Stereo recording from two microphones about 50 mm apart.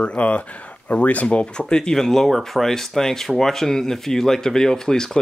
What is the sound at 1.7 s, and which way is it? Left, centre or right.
Speech, centre.